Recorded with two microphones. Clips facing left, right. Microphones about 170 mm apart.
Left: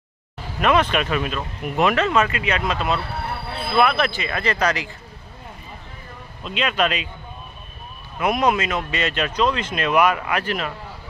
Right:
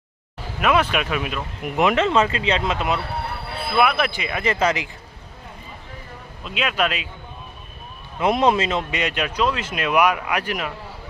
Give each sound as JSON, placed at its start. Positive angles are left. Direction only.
{"t": 0.6, "sound": "speech", "side_deg": -5}
{"t": 6.4, "sound": "speech", "side_deg": -5}
{"t": 8.2, "sound": "speech", "side_deg": -25}